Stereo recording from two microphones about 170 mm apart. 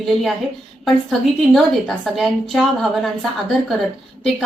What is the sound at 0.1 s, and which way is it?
A woman's voice, centre (ahead or behind).